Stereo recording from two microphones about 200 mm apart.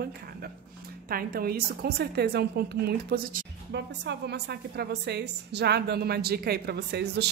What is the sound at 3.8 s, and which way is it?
A woman's voice, 60° right (ahead or behind).